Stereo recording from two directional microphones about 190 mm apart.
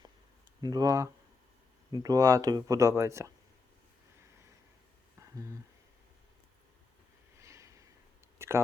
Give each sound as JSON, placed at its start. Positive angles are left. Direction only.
{"t": 0.6, "sound": "speech", "side_deg": -20}
{"t": 7.3, "sound": "snort", "side_deg": -15}
{"t": 8.4, "sound": "a sound", "side_deg": -15}